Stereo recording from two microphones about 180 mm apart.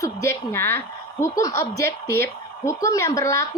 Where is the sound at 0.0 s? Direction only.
15° left (ahead or behind).